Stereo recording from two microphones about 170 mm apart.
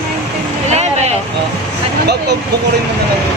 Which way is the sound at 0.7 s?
40° right (ahead or behind).